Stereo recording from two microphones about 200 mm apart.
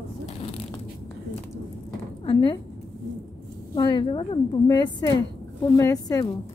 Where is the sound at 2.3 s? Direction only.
20° left (ahead or behind).